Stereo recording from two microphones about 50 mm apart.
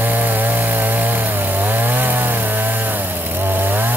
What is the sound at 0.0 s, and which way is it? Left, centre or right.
Chainsaw, right.